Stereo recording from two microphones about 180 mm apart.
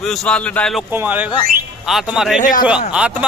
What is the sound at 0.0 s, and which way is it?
Speech, 5° left (ahead or behind).